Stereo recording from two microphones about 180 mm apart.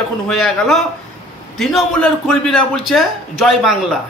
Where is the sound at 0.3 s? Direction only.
Centre (ahead or behind).